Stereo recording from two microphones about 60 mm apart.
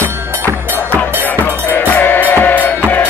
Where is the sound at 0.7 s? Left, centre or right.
Left.